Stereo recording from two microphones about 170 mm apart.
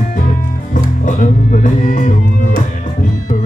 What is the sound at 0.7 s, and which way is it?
Music, 50° left (ahead or behind).